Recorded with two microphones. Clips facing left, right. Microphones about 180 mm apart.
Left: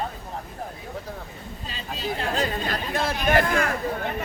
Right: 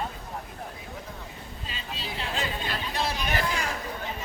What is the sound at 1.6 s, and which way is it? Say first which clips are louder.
Chatter: left 7 dB; 45° left (ahead or behind).